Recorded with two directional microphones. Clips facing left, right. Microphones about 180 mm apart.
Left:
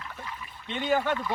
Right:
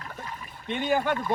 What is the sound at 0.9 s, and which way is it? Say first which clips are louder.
Speech: even; 10° right (ahead or behind).